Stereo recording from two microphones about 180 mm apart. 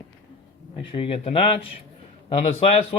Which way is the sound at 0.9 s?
30° left (ahead or behind).